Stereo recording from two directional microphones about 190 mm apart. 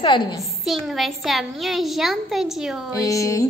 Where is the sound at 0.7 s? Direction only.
Centre (ahead or behind).